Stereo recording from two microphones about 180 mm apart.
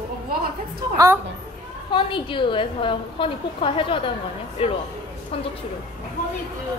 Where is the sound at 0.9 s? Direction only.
15° right (ahead or behind).